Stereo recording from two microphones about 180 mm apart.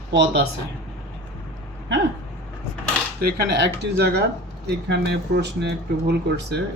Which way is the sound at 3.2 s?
65° right (ahead or behind).